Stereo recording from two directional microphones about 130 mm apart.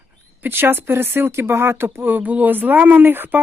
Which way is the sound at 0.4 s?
15° right (ahead or behind).